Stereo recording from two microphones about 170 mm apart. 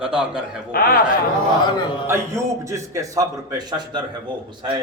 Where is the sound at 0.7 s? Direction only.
60° left (ahead or behind).